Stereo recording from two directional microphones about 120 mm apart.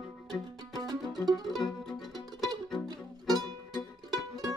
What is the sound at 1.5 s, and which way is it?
Music, centre (ahead or behind).